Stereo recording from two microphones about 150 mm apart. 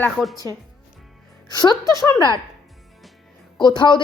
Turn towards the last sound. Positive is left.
turn(degrees=30)  # may be behind; listen again after turning